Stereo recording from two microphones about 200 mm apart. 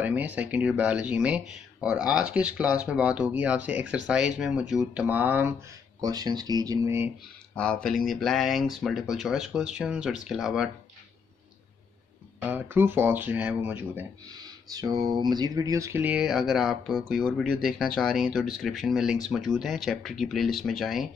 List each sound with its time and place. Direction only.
0.0 s speech: 10° right (ahead or behind)
5.9 s speech: 20° right (ahead or behind)
7.5 s speech: 5° left (ahead or behind)
12.4 s speech: 10° right (ahead or behind)